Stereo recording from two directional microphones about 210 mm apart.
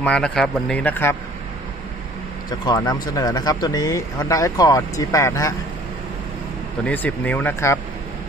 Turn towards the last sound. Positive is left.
turn(degrees=10)  # may be behind; listen again after turning